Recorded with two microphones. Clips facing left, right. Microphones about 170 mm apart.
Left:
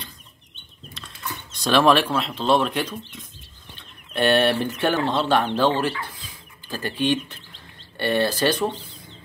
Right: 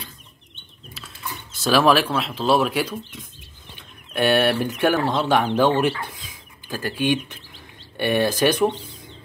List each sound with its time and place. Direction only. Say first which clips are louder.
0.9 s speech: even; 5° right (ahead or behind)
6.0 s bird: right 2 dB; 10° right (ahead or behind)